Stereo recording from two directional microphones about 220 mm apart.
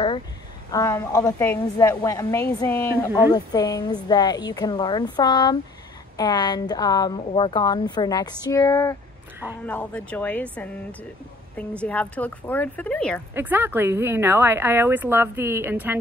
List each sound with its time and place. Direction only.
0.7 s speech: 15° left (ahead or behind)
3.1 s a woman's voice: 10° right (ahead or behind)
3.3 s a woman's voice: 15° left (ahead or behind)
13.3 s a woman's voice: 10° right (ahead or behind)